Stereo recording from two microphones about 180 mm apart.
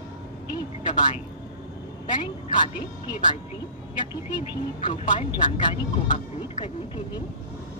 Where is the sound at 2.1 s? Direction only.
25° left (ahead or behind).